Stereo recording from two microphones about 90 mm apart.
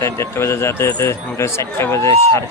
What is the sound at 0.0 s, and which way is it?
A man's voice, 30° left (ahead or behind).